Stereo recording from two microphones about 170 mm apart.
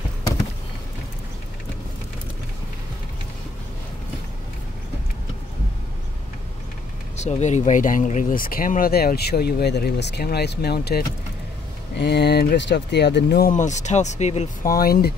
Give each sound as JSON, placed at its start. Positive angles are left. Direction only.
{"t": 7.2, "sound": "speech", "side_deg": 40}
{"t": 13.5, "sound": "speech", "side_deg": 45}
{"t": 14.7, "sound": "speech", "side_deg": 60}